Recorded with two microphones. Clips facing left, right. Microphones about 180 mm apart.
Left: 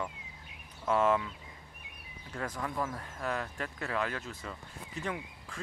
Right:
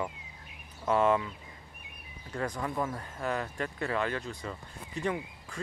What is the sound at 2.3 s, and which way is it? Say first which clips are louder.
Speech: right 3 dB; centre (ahead or behind).